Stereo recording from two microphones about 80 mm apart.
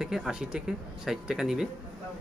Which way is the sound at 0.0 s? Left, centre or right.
Centre.